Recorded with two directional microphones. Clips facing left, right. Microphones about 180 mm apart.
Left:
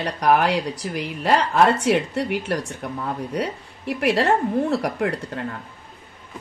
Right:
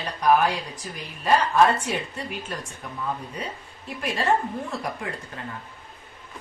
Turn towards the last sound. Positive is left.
turn(degrees=70)  # may be behind; listen again after turning